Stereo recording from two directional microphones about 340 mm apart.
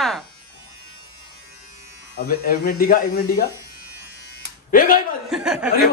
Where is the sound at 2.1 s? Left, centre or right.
Left.